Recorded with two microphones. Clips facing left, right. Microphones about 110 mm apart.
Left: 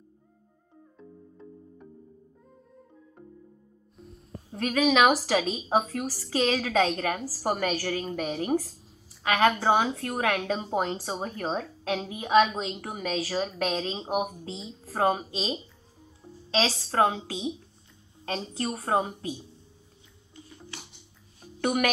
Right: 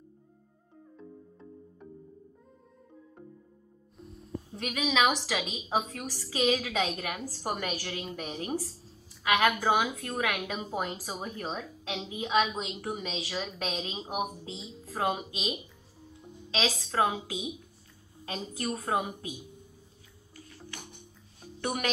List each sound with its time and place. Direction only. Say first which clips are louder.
0.9 s music: even; centre (ahead or behind)
3.9 s music: right 5 dB; centre (ahead or behind)
4.5 s a woman's voice: left 8 dB; 40° left (ahead or behind)
9.2 s a woman's voice: left 3 dB; 35° left (ahead or behind)
14.1 s a woman's voice: left 4 dB; 50° left (ahead or behind)
14.8 s a woman's voice: left 5 dB; 35° left (ahead or behind)
20.3 s music: left 1 dB; 20° left (ahead or behind)
21.5 s speech: left 6 dB; 60° left (ahead or behind)